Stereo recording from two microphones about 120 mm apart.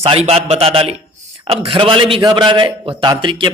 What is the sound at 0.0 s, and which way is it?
A man's voice, 55° right (ahead or behind).